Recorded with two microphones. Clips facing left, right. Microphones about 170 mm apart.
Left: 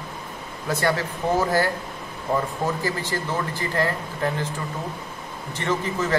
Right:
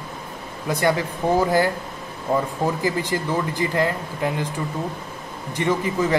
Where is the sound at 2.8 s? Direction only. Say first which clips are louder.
Right 4 dB; 15° right (ahead or behind).